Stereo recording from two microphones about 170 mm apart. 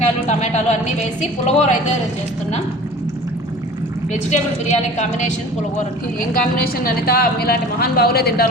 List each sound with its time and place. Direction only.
0.0 s a woman's voice: 40° left (ahead or behind)
4.1 s a woman's voice: 45° left (ahead or behind)
5.7 s a woman's voice: 55° left (ahead or behind)